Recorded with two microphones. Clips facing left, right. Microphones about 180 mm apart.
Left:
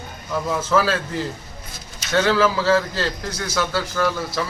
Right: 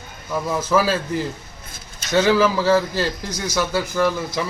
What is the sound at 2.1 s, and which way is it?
Speech, 15° right (ahead or behind).